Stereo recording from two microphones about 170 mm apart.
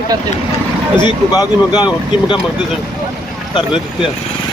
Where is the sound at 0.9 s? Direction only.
25° left (ahead or behind).